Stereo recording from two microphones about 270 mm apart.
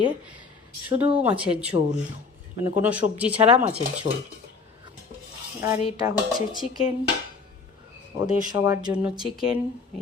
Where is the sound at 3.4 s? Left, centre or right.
Right.